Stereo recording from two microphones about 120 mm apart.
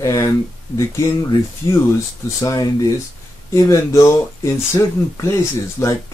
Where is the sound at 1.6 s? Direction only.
25° left (ahead or behind).